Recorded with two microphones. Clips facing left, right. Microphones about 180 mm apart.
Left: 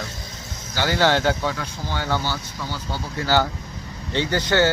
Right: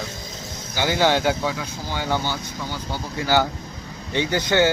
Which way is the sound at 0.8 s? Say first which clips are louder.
Even; 15° right (ahead or behind).